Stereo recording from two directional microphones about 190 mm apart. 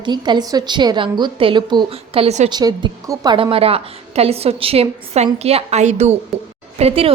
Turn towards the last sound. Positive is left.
turn(degrees=-30)  # may be behind; listen again after turning